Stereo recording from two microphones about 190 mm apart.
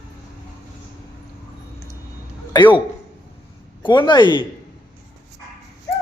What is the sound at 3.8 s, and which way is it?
Speech, 25° left (ahead or behind).